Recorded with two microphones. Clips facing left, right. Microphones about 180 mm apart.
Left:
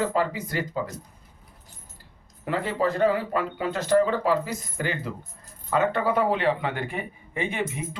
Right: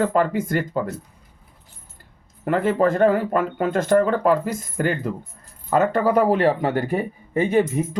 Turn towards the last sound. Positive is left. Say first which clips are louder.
# right 10 dB
turn(degrees=-40)  # may be behind; listen again after turning